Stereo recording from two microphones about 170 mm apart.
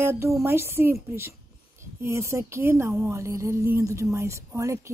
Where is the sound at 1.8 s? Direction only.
15° right (ahead or behind).